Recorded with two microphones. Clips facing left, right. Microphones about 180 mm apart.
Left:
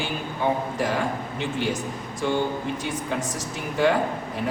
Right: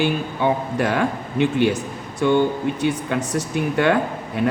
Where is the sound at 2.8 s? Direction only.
65° right (ahead or behind).